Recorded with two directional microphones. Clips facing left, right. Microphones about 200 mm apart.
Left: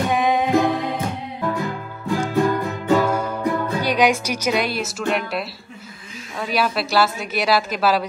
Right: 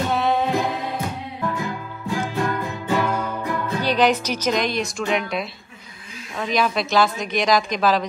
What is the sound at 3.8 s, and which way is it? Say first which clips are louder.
A woman's voice: even; 10° left (ahead or behind).